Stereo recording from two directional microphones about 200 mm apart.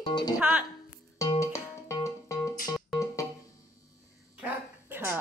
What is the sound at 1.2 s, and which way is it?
Music, 15° left (ahead or behind).